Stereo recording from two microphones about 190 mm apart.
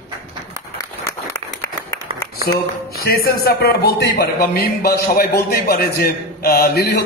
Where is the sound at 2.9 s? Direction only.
55° left (ahead or behind).